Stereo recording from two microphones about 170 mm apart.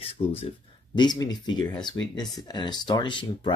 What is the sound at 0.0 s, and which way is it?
Speech, 35° left (ahead or behind).